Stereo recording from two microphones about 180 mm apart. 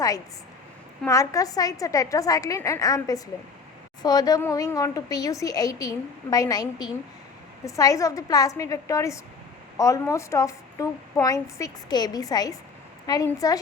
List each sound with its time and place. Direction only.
1.0 s a woman's voice: 15° left (ahead or behind)